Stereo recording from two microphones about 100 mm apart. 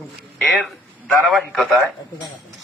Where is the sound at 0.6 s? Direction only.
Centre (ahead or behind).